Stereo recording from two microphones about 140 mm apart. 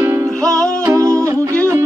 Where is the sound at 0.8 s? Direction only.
20° right (ahead or behind).